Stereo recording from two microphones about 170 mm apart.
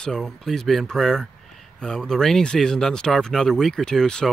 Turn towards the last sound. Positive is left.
turn(degrees=5)  # may be behind; listen again after turning